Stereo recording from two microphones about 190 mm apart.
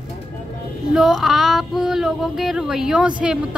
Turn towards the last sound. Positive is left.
turn(degrees=-5)  # may be behind; listen again after turning